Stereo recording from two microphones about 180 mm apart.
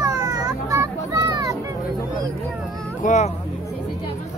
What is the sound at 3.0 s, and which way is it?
Speech, 40° left (ahead or behind).